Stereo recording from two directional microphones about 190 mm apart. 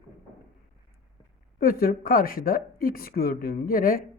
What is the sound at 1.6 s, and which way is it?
A woman's voice, 50° left (ahead or behind).